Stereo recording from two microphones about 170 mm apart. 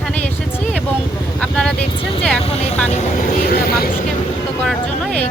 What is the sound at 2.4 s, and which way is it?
Vehicle, 40° left (ahead or behind).